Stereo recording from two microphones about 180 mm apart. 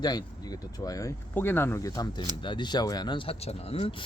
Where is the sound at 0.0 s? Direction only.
20° left (ahead or behind).